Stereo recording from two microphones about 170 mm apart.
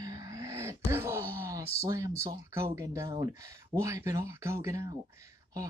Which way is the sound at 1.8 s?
20° right (ahead or behind).